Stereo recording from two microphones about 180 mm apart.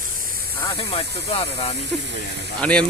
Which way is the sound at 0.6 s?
25° left (ahead or behind).